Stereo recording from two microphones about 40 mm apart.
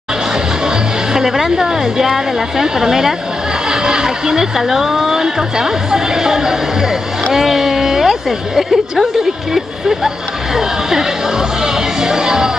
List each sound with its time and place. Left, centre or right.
0.7 s a woman's voice: centre
4.6 s a woman's voice: centre